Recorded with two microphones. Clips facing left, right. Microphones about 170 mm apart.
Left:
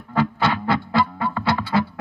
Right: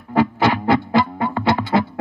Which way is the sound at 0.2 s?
15° right (ahead or behind).